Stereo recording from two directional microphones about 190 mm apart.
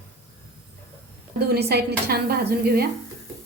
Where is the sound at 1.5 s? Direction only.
55° right (ahead or behind).